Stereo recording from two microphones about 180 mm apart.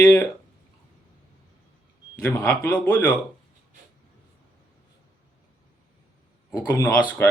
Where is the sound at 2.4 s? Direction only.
5° left (ahead or behind).